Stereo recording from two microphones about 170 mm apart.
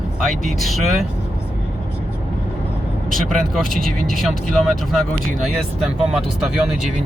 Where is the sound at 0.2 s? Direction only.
Centre (ahead or behind).